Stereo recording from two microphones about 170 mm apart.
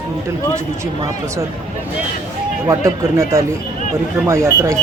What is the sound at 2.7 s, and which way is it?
Speech, 15° right (ahead or behind).